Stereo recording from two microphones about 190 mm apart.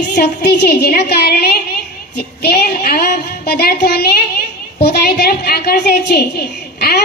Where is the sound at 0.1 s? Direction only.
60° left (ahead or behind).